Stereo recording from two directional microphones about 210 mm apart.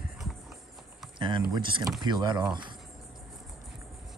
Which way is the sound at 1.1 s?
20° right (ahead or behind).